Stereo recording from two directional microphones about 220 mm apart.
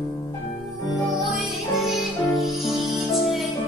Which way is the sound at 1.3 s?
Centre (ahead or behind).